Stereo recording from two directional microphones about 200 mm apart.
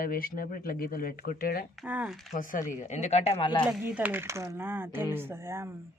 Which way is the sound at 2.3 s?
45° left (ahead or behind).